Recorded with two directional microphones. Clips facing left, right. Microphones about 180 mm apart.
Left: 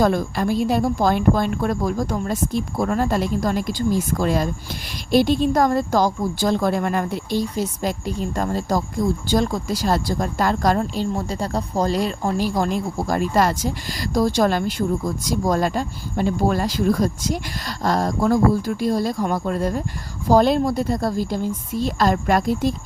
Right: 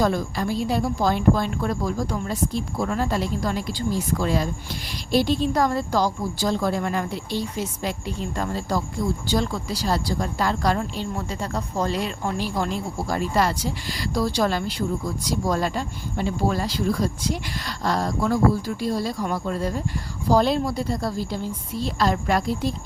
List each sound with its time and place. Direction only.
0.0 s a woman's voice: 50° left (ahead or behind)